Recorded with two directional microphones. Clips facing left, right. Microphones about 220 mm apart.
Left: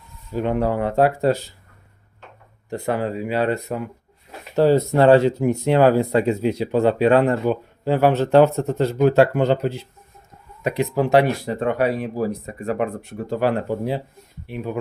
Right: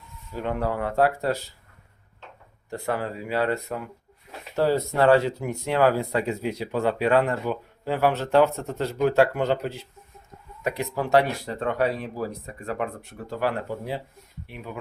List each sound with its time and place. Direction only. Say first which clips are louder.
0.3 s speech: left 6 dB; 20° left (ahead or behind)
2.6 s speech: left 5 dB; 20° left (ahead or behind)
14.5 s speech: left 10 dB; 35° left (ahead or behind)